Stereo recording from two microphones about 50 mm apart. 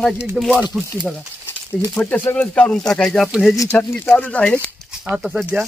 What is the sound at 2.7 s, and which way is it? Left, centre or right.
Speech, centre.